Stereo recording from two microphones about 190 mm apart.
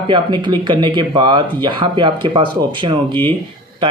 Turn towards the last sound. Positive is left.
turn(degrees=-25)  # may be behind; listen again after turning